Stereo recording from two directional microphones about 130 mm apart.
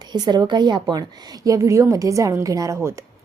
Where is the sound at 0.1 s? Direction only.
35° right (ahead or behind).